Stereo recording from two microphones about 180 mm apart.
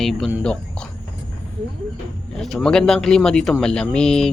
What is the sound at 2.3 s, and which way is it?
Speech, centre (ahead or behind).